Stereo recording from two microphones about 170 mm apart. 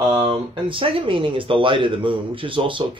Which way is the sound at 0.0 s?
25° right (ahead or behind).